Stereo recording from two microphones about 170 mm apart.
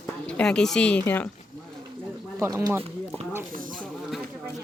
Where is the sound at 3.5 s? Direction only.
55° right (ahead or behind).